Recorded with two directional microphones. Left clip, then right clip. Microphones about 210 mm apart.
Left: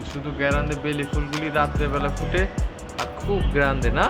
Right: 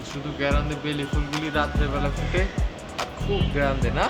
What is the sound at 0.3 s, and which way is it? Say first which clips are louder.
Speech: left 3 dB; 10° left (ahead or behind).